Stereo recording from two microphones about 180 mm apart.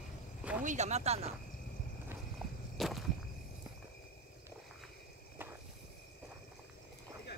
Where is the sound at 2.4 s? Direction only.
Centre (ahead or behind).